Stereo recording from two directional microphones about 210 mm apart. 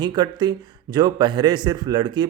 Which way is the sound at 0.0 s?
20° right (ahead or behind).